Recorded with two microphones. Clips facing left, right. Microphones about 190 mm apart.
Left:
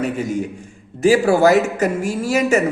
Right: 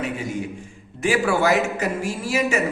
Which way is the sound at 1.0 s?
40° left (ahead or behind).